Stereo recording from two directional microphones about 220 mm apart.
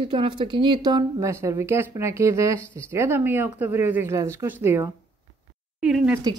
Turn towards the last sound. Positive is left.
turn(degrees=-5)  # may be behind; listen again after turning